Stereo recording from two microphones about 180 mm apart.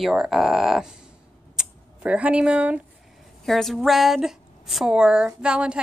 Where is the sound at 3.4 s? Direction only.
Centre (ahead or behind).